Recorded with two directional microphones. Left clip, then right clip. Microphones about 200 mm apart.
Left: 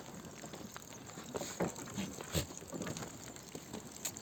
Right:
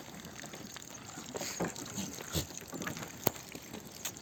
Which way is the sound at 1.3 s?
Centre (ahead or behind).